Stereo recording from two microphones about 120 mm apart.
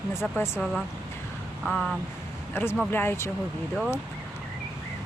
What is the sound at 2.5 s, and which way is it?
Speech, 20° left (ahead or behind).